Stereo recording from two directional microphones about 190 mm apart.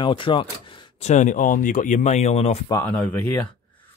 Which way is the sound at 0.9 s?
35° left (ahead or behind).